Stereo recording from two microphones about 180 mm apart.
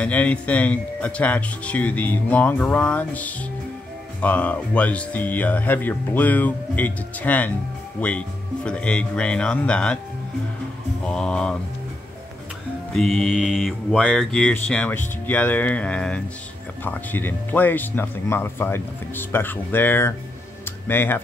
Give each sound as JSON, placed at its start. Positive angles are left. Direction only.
{"t": 0.0, "sound": "speech", "side_deg": 5}
{"t": 8.0, "sound": "mantra", "side_deg": 5}
{"t": 11.1, "sound": "mantra", "side_deg": 5}
{"t": 12.9, "sound": "mantra", "side_deg": 0}
{"t": 16.8, "sound": "speech", "side_deg": 10}
{"t": 20.6, "sound": "tick-tock", "side_deg": 10}